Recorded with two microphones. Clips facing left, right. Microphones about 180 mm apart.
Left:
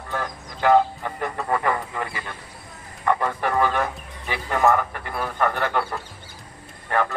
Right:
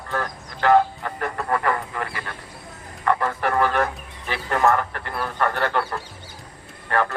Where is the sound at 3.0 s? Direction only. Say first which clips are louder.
Even; 15° left (ahead or behind).